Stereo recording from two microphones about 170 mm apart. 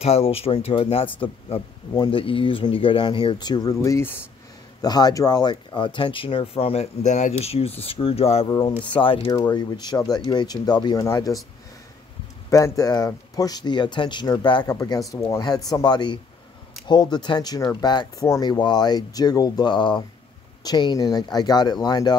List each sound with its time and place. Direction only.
0.0 s speech: 35° left (ahead or behind); by 11.3 s 20° left (ahead or behind)
12.4 s speech: 20° left (ahead or behind)